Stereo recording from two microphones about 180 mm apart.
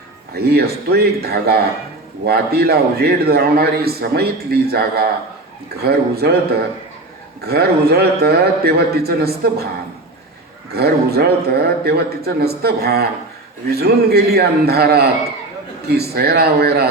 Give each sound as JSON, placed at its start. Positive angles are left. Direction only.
{"t": 0.3, "sound": "a man's voice", "side_deg": -60}
{"t": 7.4, "sound": "a man's voice", "side_deg": -60}
{"t": 10.8, "sound": "a man's voice", "side_deg": -60}